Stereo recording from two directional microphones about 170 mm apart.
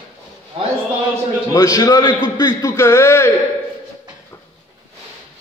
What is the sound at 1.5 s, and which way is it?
A man's voice, 20° left (ahead or behind).